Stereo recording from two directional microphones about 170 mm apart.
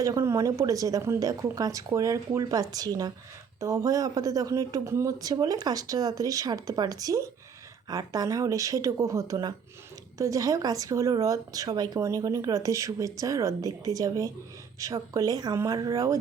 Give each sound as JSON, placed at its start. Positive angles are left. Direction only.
{"t": 0.0, "sound": "speech", "side_deg": -20}